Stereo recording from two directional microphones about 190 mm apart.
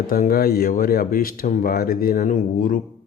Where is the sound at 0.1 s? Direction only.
50° left (ahead or behind).